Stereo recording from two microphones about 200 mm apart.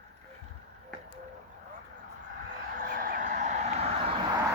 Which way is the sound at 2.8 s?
45° right (ahead or behind).